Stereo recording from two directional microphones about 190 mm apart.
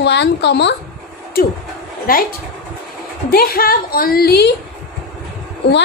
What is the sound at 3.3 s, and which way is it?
A woman's voice, 50° left (ahead or behind).